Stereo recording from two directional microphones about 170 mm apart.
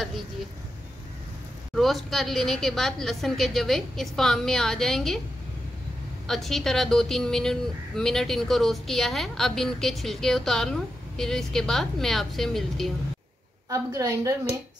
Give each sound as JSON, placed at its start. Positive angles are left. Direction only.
{"t": 1.8, "sound": "a woman's voice", "side_deg": 0}
{"t": 6.2, "sound": "a woman's voice", "side_deg": 0}
{"t": 13.7, "sound": "a woman's voice", "side_deg": -20}